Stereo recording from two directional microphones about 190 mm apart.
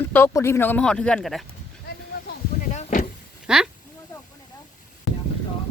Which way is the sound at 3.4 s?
5° right (ahead or behind).